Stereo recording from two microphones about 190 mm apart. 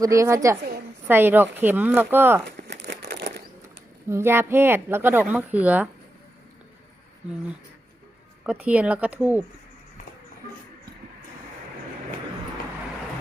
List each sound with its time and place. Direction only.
0.0 s speech: 15° right (ahead or behind)
2.6 s a sound: 65° right (ahead or behind)
4.1 s speech: 10° right (ahead or behind)
8.4 s speech: 5° right (ahead or behind)